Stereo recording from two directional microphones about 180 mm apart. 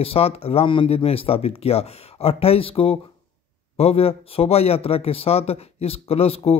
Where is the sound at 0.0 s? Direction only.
35° left (ahead or behind).